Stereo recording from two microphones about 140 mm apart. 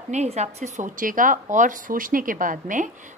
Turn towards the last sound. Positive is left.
turn(degrees=-65)  # may be behind; listen again after turning